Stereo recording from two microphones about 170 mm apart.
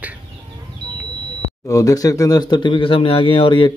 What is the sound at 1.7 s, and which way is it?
Speech, 20° left (ahead or behind).